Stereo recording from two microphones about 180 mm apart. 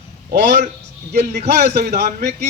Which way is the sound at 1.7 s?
65° right (ahead or behind).